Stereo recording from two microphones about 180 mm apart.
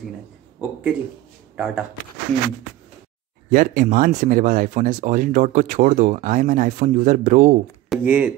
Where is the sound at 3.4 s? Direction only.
50° right (ahead or behind).